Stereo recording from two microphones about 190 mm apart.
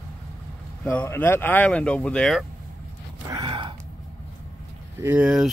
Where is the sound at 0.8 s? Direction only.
10° left (ahead or behind).